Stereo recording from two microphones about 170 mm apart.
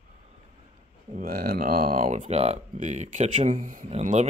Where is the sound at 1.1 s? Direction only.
60° right (ahead or behind).